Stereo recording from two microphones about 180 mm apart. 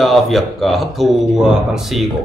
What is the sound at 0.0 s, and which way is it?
Speech, centre (ahead or behind).